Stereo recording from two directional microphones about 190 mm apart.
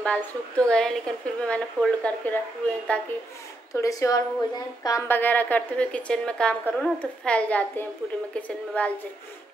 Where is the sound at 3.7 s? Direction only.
15° left (ahead or behind).